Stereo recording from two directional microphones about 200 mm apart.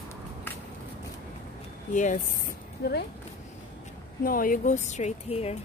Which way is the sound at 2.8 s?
55° left (ahead or behind).